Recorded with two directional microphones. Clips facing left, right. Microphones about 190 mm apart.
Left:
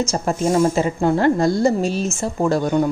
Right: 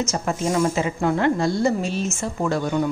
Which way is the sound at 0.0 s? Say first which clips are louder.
Left 4 dB; 35° left (ahead or behind).